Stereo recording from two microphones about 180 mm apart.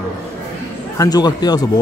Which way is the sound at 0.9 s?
20° left (ahead or behind).